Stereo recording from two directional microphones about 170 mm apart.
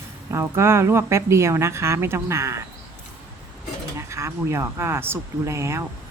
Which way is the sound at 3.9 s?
15° right (ahead or behind).